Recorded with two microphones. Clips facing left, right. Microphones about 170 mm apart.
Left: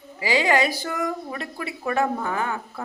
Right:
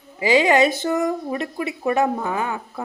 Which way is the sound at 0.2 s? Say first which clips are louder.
Right 5 dB; 20° right (ahead or behind).